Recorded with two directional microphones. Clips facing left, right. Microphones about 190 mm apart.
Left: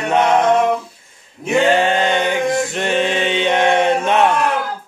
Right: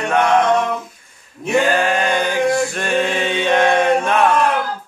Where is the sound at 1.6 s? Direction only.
25° left (ahead or behind).